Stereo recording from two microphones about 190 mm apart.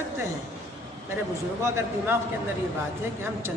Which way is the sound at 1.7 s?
15° right (ahead or behind).